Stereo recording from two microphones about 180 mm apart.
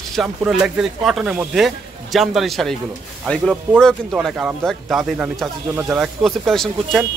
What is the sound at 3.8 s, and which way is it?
Speech, centre (ahead or behind).